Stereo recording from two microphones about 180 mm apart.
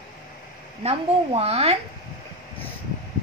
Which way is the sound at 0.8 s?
35° right (ahead or behind).